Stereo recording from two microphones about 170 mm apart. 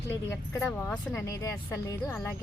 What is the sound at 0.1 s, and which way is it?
Speech, 15° left (ahead or behind).